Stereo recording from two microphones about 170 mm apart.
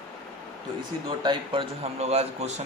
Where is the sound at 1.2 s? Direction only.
25° right (ahead or behind).